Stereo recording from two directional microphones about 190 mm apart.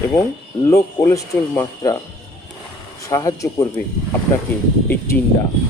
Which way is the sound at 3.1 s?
20° left (ahead or behind).